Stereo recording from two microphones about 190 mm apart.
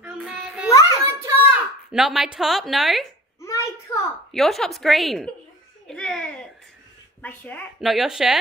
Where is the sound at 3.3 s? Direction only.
15° left (ahead or behind).